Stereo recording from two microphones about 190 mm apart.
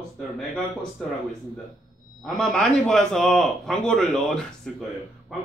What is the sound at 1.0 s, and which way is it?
Speech, centre (ahead or behind).